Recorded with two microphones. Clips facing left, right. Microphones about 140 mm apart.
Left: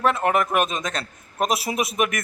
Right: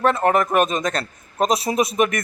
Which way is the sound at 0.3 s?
5° left (ahead or behind).